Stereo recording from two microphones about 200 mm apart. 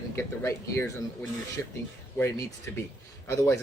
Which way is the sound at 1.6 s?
10° left (ahead or behind).